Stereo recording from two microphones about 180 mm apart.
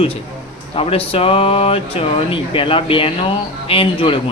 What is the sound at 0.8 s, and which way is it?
Speech, 30° left (ahead or behind).